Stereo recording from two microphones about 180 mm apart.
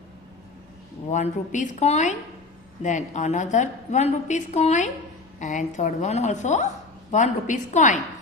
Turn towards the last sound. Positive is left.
turn(degrees=45)  # may be behind; listen again after turning